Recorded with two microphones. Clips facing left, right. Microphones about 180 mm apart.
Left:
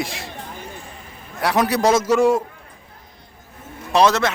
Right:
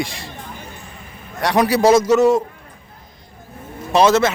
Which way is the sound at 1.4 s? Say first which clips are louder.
Right 3 dB; centre (ahead or behind).